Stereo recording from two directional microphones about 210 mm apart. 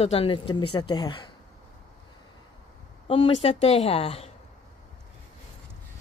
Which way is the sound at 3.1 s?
30° left (ahead or behind).